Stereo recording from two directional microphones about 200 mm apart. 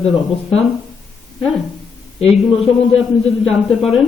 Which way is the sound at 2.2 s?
30° left (ahead or behind).